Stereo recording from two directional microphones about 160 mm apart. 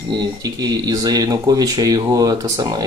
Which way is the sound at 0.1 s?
25° right (ahead or behind).